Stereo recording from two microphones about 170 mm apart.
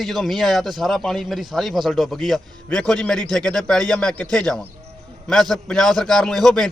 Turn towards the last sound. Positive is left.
turn(degrees=0)  # may be behind; listen again after turning